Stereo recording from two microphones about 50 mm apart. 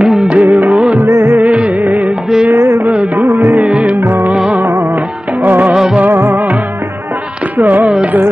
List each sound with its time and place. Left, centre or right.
0.0 s music: centre
0.3 s music: right
1.2 s music: right
1.5 s music: right
2.5 s music: right
2.8 s music: right
5.4 s music: right
7.5 s music: right